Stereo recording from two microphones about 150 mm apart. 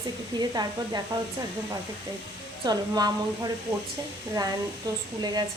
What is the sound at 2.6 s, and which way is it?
Speech, 25° right (ahead or behind).